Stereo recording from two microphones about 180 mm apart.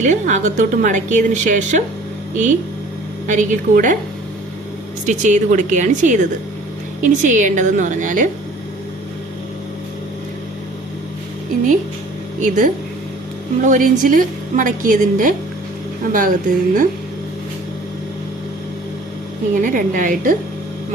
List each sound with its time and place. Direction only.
0.0 s a woman's voice: 45° right (ahead or behind)
5.0 s a woman's voice: 45° right (ahead or behind)
12.4 s a woman's voice: 45° right (ahead or behind)
19.5 s a woman's voice: 45° right (ahead or behind)